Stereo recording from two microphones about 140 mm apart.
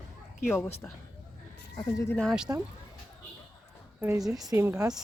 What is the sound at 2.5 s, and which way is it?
Speech, 20° right (ahead or behind).